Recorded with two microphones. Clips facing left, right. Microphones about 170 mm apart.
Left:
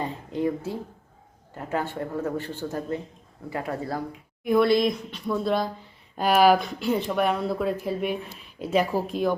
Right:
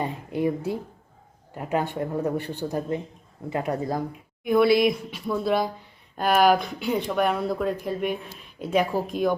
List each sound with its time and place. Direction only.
0.0 s speech: 10° right (ahead or behind)
4.4 s speech: centre (ahead or behind)